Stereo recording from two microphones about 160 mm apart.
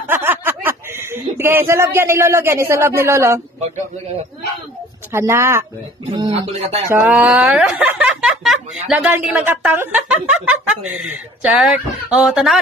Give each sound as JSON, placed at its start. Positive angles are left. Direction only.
{"t": 0.1, "sound": "speech", "side_deg": -10}
{"t": 5.1, "sound": "speech", "side_deg": -15}
{"t": 6.1, "sound": "speech", "side_deg": -30}
{"t": 6.9, "sound": "speech", "side_deg": -10}